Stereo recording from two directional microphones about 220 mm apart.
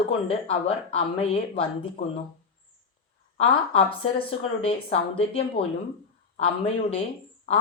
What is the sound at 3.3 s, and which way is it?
Speech, 25° left (ahead or behind).